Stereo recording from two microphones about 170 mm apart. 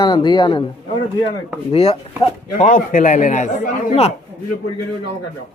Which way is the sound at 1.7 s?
35° left (ahead or behind).